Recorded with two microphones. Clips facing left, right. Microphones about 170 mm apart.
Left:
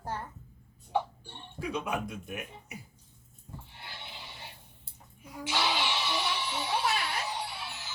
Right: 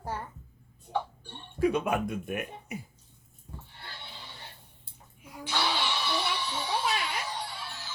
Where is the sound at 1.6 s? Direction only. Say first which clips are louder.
Right 7 dB; 55° right (ahead or behind).